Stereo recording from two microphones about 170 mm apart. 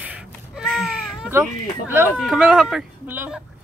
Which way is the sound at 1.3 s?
15° right (ahead or behind).